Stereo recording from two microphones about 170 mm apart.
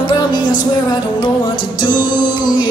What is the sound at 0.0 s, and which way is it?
Music, 25° left (ahead or behind).